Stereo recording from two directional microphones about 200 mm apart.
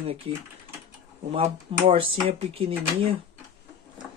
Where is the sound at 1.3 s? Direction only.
30° right (ahead or behind).